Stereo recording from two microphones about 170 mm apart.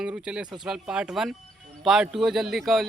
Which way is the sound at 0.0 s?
5° right (ahead or behind).